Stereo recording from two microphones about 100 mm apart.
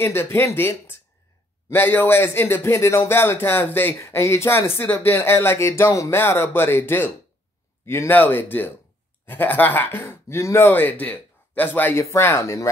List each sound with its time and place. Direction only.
0.0 s speech: 25° left (ahead or behind)